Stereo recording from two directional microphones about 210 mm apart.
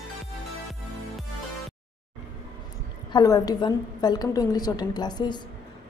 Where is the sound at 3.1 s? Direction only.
15° left (ahead or behind).